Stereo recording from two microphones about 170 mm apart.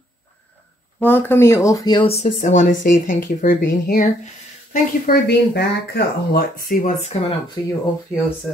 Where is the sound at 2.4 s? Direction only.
50° left (ahead or behind).